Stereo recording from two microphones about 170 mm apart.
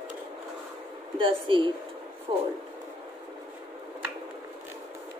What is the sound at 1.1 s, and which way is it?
Speech, 30° right (ahead or behind).